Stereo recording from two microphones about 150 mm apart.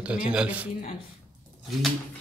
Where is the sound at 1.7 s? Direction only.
Centre (ahead or behind).